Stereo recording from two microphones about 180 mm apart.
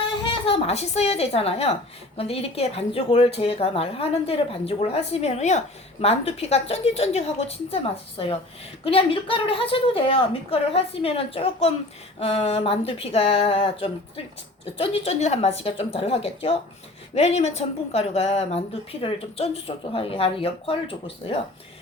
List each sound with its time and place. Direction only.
0.2 s a woman's voice: 30° left (ahead or behind)